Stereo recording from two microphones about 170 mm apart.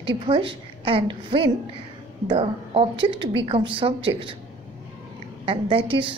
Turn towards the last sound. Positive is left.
turn(degrees=-30)  # may be behind; listen again after turning